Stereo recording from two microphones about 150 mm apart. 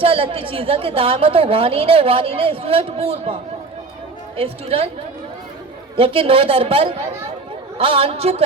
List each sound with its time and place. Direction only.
0.0 s a woman's voice: 40° right (ahead or behind)
4.4 s a woman's voice: 40° right (ahead or behind)
6.0 s a woman's voice: 40° right (ahead or behind)